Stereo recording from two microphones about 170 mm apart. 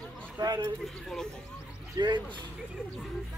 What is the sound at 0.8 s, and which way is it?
Speech, 5° left (ahead or behind).